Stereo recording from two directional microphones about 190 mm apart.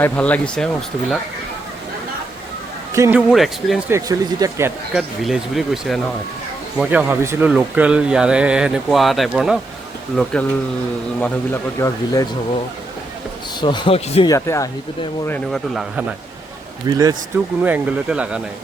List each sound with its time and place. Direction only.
0.0 s speech: 5° left (ahead or behind)
2.9 s speech: 15° right (ahead or behind)
3.2 s speech: centre (ahead or behind)
3.8 s speech: 15° right (ahead or behind)
4.9 s speech: centre (ahead or behind)
11.8 s speech: 20° left (ahead or behind)
13.6 s speech: 25° left (ahead or behind)
14.3 s speech: 15° left (ahead or behind)
15.3 s speech: centre (ahead or behind)
16.8 s speech: 20° right (ahead or behind)
17.6 s speech: 5° right (ahead or behind)